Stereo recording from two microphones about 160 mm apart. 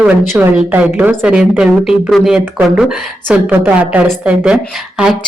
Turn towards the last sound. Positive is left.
turn(degrees=-5)  # may be behind; listen again after turning